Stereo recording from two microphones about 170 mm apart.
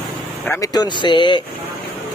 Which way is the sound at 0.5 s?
20° left (ahead or behind).